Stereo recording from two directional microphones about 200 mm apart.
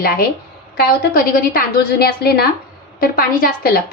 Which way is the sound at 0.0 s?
50° left (ahead or behind).